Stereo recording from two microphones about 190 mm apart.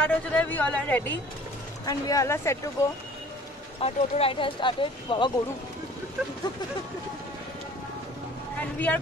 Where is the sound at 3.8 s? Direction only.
30° left (ahead or behind).